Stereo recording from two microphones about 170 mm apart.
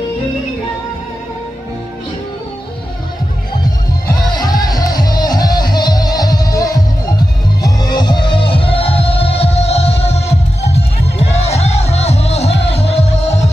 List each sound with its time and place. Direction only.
3.6 s music: 25° left (ahead or behind); by 13.5 s 40° left (ahead or behind)